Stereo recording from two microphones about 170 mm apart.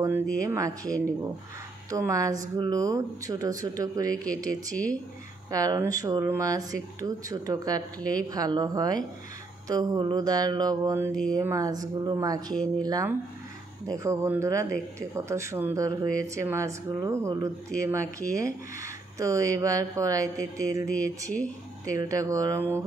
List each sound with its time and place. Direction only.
0.0 s speech: 15° right (ahead or behind)
1.9 s speech: 20° right (ahead or behind)